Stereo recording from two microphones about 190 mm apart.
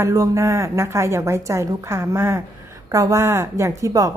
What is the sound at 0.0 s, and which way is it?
A woman's voice, 15° right (ahead or behind).